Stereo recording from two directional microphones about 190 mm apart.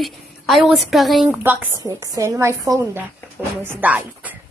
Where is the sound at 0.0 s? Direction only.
Centre (ahead or behind).